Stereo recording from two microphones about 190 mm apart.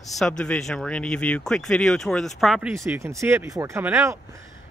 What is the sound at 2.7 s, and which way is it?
Speech, 15° right (ahead or behind).